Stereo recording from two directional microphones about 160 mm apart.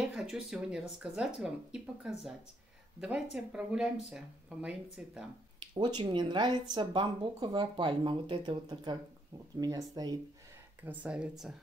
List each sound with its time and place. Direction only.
0.1 s speech: 5° right (ahead or behind)
3.5 s speech: 5° right (ahead or behind)
5.6 s speech: 25° right (ahead or behind)
10.8 s speech: 10° right (ahead or behind)